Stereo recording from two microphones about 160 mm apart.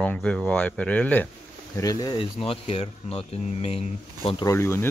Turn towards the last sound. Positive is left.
turn(degrees=15)  # may be behind; listen again after turning